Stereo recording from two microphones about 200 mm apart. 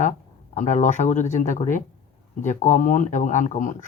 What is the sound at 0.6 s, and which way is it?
Speech, 40° left (ahead or behind).